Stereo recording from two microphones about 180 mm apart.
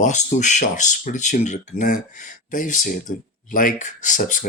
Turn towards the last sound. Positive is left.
turn(degrees=45)  # may be behind; listen again after turning